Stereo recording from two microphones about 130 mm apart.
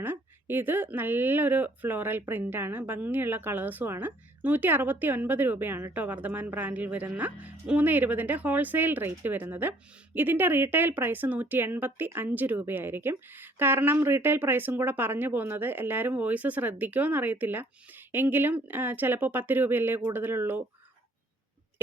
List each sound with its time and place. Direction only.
0.0 s speech: 15° right (ahead or behind)